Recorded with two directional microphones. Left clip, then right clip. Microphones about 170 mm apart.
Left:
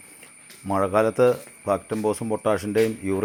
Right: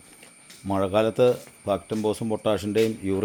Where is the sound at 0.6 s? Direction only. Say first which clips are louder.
Left 2 dB; 15° right (ahead or behind).